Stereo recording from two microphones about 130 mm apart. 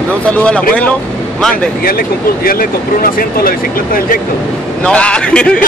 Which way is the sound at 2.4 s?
90° left.